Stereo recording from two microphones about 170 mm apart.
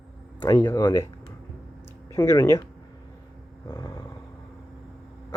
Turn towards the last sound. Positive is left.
turn(degrees=20)  # may be behind; listen again after turning